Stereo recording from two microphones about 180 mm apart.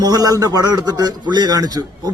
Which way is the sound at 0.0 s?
20° right (ahead or behind).